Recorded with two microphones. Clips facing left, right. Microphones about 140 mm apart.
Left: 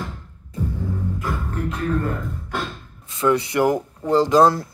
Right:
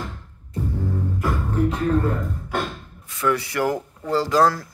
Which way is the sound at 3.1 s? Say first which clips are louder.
Left 4 dB; 20° left (ahead or behind).